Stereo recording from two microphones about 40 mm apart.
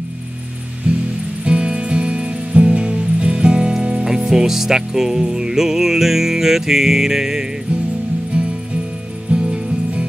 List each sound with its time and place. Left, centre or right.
0.9 s music: right
4.0 s music: centre
8.3 s music: right